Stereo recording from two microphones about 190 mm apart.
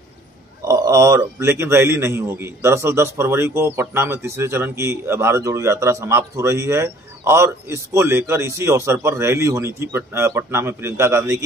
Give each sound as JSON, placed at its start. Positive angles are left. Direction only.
{"t": 0.6, "sound": "a man's voice", "side_deg": -15}